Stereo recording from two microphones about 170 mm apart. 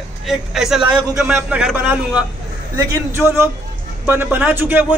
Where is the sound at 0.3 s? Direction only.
Centre (ahead or behind).